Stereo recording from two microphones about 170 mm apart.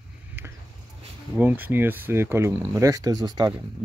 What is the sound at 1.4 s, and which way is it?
Speech, 10° right (ahead or behind).